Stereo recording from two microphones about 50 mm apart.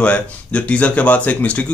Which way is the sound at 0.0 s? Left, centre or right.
Left.